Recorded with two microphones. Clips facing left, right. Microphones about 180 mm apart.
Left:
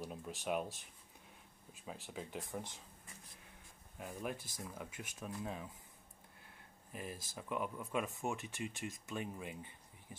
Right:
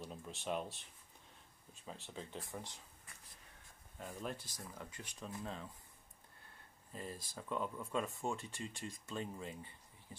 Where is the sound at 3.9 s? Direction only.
10° left (ahead or behind).